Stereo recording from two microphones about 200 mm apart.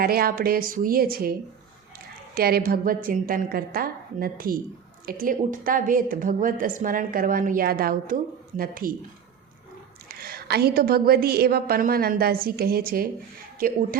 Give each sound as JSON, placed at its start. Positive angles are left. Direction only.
{"t": 0.0, "sound": "a woman's voice", "side_deg": -50}
{"t": 10.1, "sound": "a woman's voice", "side_deg": -50}